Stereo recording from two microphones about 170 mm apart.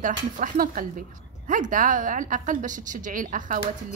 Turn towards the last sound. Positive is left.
turn(degrees=-50)  # may be behind; listen again after turning